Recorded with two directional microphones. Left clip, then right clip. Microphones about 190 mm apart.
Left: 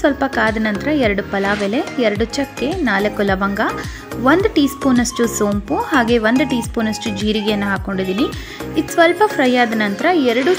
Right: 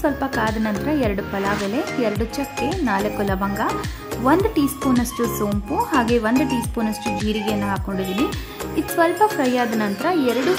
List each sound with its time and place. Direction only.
0.0 s speech: 15° left (ahead or behind)